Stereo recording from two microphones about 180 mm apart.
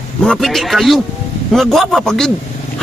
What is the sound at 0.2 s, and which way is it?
Speech, centre (ahead or behind).